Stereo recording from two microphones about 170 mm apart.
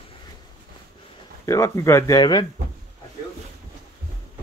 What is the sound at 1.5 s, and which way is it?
Speech, 15° left (ahead or behind).